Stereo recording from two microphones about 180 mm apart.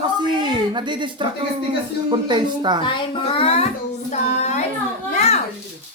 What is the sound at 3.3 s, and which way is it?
Child singing, 35° left (ahead or behind).